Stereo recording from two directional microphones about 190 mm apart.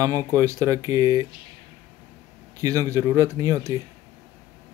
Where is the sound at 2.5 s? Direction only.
15° right (ahead or behind).